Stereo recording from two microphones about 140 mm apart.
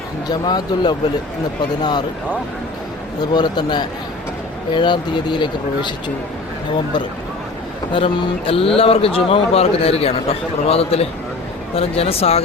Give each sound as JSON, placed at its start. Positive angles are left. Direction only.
{"t": 0.3, "sound": "speech", "side_deg": 30}
{"t": 3.3, "sound": "speech", "side_deg": 30}
{"t": 7.9, "sound": "speech", "side_deg": 40}